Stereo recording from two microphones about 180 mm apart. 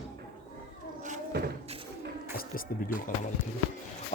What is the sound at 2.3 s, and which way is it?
Music, 50° left (ahead or behind).